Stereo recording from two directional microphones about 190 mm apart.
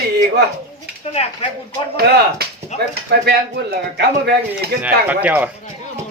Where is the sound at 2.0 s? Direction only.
55° right (ahead or behind).